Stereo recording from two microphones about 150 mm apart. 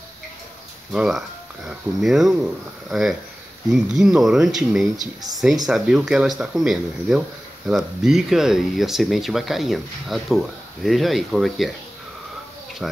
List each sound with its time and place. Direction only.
0.9 s speech: 5° right (ahead or behind)
4.9 s speech: 25° right (ahead or behind)
5.7 s speech: 5° right (ahead or behind)
12.8 s speech: 5° right (ahead or behind)